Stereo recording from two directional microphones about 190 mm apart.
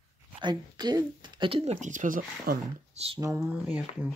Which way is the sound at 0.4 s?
25° right (ahead or behind).